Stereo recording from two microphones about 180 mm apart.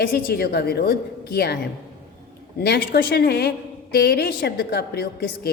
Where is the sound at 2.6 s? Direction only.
60° left (ahead or behind).